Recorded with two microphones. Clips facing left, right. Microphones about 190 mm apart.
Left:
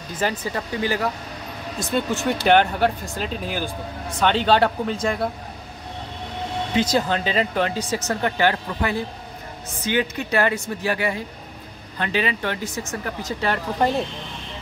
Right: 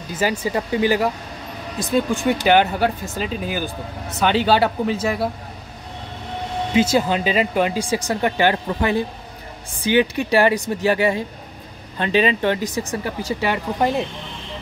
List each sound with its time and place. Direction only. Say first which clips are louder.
0.2 s speech: right 4 dB; 10° right (ahead or behind)
1.9 s speech: right 4 dB; centre (ahead or behind)
6.7 s speech: right 4 dB; 10° right (ahead or behind)
9.9 s speech: right 5 dB; 15° right (ahead or behind)